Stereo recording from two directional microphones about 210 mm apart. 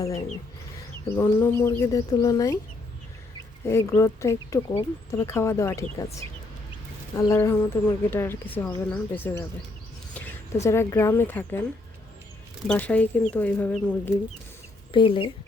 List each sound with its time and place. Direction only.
0.0 s speech: 15° left (ahead or behind)
3.7 s speech: 15° left (ahead or behind)
7.2 s speech: 15° left (ahead or behind)
12.6 s speech: 5° left (ahead or behind)
14.9 s speech: 25° left (ahead or behind)